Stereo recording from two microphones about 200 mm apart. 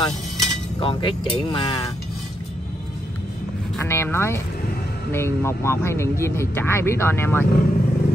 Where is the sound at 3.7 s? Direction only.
10° left (ahead or behind).